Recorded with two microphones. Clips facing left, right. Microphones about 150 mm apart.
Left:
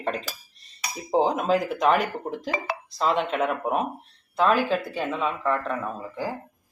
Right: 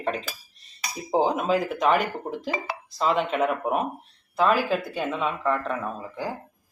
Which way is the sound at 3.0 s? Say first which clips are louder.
Right 1 dB; centre (ahead or behind).